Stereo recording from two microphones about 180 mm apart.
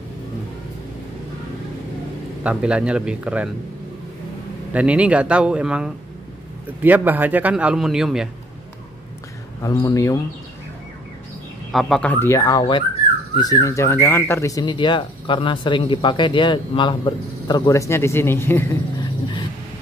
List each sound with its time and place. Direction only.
2.4 s speech: 5° right (ahead or behind)
4.7 s a man's voice: 5° right (ahead or behind)
9.6 s speech: 20° left (ahead or behind)
11.7 s speech: centre (ahead or behind)